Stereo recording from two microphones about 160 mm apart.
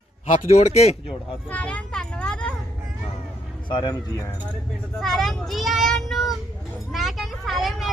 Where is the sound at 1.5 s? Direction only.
10° left (ahead or behind).